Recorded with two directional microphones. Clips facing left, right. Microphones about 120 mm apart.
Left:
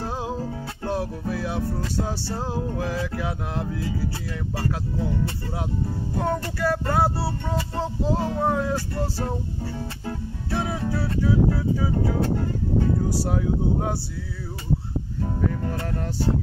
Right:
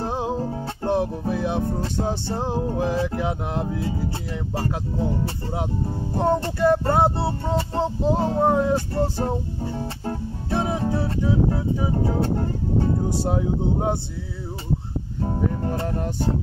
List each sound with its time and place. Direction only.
0.0 s music: 20° right (ahead or behind)
12.2 s speech: 35° right (ahead or behind)
13.0 s music: 25° right (ahead or behind)
15.2 s music: 30° right (ahead or behind)